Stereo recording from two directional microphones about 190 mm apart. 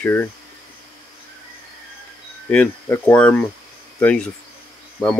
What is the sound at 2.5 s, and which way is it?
Speech, 10° left (ahead or behind).